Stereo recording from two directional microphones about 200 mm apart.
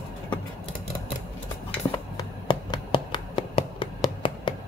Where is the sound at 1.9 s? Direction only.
20° left (ahead or behind).